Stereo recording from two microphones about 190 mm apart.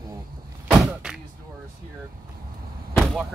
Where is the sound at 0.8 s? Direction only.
5° right (ahead or behind).